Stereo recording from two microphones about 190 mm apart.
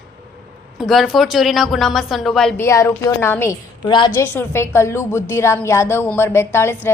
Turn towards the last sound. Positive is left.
turn(degrees=15)  # may be behind; listen again after turning